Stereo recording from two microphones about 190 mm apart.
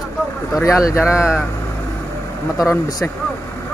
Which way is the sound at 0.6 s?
15° left (ahead or behind).